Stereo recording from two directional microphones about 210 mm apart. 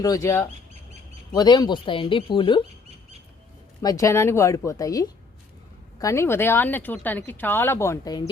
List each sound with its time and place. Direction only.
0.0 s speech: 15° left (ahead or behind)
3.8 s speech: 15° left (ahead or behind)